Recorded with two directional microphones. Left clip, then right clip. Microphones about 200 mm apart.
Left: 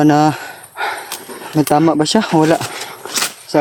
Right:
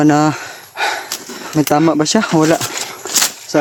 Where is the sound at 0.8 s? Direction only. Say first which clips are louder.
Right 3 dB; 55° right (ahead or behind).